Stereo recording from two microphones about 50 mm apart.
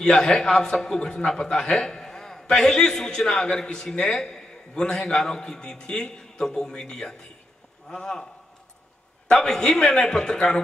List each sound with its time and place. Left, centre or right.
0.0 s a man's voice: centre
9.3 s a man's voice: centre